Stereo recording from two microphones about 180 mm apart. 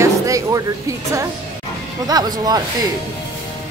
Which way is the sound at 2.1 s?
20° right (ahead or behind).